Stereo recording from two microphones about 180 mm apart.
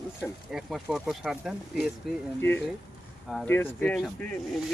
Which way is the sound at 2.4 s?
10° left (ahead or behind).